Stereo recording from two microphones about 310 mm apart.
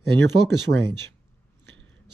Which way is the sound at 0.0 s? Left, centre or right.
Right.